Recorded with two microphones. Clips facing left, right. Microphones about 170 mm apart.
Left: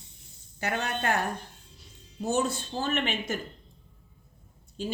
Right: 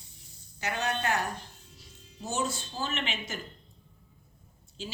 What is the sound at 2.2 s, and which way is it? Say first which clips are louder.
A woman's voice: left 5 dB; 55° left (ahead or behind).